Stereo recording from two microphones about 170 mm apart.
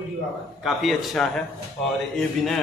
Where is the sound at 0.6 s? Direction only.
Centre (ahead or behind).